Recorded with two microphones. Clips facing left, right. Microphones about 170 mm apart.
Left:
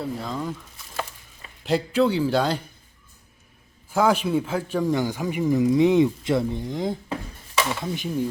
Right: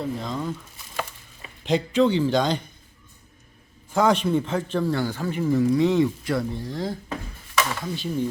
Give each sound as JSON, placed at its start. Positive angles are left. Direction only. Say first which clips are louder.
{"t": 0.0, "sound": "speech", "louder": "right 1 dB", "side_deg": 5}
{"t": 1.6, "sound": "speech", "louder": "right 1 dB", "side_deg": 5}
{"t": 3.9, "sound": "speech", "louder": "even", "side_deg": 5}